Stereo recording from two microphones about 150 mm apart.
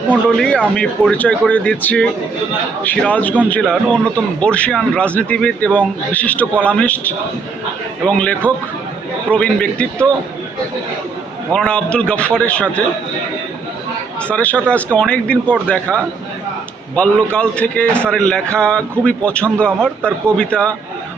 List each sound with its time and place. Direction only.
0.3 s a man's voice: 5° left (ahead or behind)
11.5 s a man's voice: 5° left (ahead or behind)
14.2 s a man's voice: 10° left (ahead or behind)